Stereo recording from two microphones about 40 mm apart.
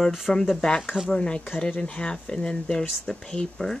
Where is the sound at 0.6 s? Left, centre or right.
Centre.